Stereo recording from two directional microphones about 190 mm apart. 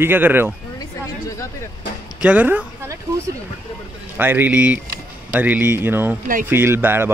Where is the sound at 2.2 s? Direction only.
10° right (ahead or behind).